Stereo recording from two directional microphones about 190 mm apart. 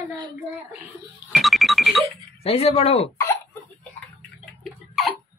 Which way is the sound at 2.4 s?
30° left (ahead or behind).